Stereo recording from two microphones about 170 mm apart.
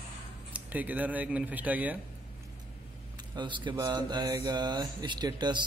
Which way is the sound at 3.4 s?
25° right (ahead or behind).